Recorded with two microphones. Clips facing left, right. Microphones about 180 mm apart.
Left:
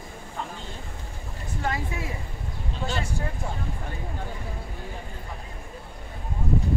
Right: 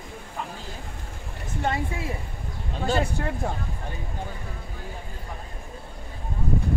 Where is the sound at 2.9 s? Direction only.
55° right (ahead or behind).